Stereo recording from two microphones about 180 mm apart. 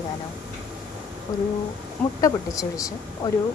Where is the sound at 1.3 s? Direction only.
20° left (ahead or behind).